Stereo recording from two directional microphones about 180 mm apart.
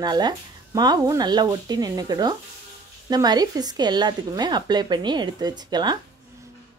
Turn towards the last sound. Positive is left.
turn(degrees=-25)  # may be behind; listen again after turning